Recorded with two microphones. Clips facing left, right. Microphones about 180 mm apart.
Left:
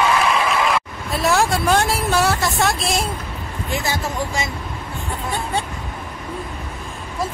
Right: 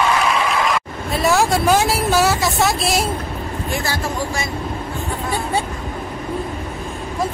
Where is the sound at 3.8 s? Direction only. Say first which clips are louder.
Right 1 dB; 20° left (ahead or behind).